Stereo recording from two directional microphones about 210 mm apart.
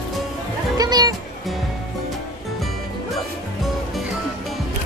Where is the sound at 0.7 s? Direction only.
20° right (ahead or behind).